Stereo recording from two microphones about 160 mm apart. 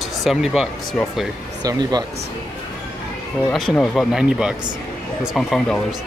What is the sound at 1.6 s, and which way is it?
Speech, 25° right (ahead or behind).